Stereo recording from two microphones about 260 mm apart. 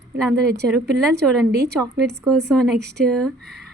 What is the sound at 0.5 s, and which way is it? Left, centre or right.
A woman's voice, right.